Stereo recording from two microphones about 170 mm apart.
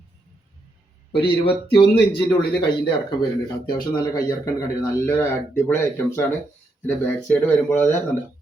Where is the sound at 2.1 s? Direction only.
30° left (ahead or behind).